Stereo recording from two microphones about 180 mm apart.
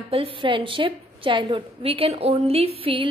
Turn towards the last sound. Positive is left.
turn(degrees=-30)  # may be behind; listen again after turning